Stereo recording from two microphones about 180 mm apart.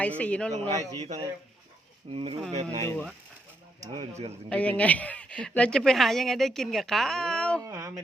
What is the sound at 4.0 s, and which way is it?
Speech, 35° right (ahead or behind).